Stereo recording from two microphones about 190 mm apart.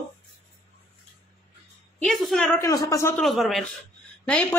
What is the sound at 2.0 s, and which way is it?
Speech, centre (ahead or behind).